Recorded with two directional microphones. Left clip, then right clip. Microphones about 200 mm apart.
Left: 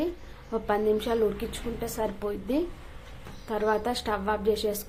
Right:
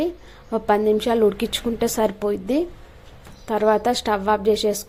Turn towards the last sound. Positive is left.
turn(degrees=-30)  # may be behind; listen again after turning